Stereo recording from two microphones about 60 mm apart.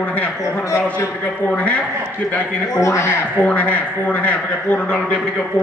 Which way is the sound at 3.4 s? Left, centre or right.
Left.